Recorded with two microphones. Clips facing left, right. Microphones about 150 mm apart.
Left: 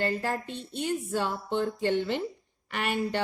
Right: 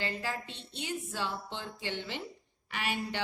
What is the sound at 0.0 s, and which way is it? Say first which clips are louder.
A woman's voice: left 7 dB; 50° left (ahead or behind).